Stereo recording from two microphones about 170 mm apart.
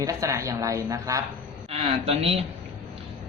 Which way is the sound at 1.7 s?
35° right (ahead or behind).